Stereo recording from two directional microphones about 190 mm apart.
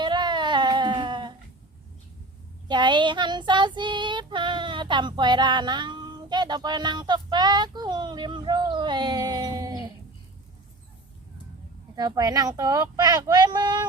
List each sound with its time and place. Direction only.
0.0 s a sound: 25° right (ahead or behind)
2.6 s child singing: 25° right (ahead or behind)
11.9 s speech: 20° right (ahead or behind)